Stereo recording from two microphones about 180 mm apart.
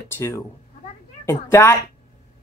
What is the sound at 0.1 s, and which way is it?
Speech, 15° left (ahead or behind).